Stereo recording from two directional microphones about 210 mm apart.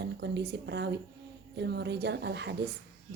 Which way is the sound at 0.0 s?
55° right (ahead or behind).